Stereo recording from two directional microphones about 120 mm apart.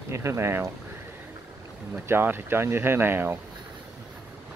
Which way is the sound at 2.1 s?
15° right (ahead or behind).